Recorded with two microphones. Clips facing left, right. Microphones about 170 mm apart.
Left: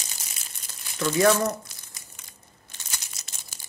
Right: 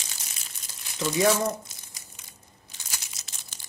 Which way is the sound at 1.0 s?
15° right (ahead or behind).